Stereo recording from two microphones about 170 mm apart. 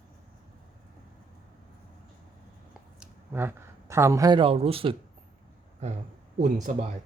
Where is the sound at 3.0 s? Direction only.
10° right (ahead or behind); by 4.9 s 35° right (ahead or behind).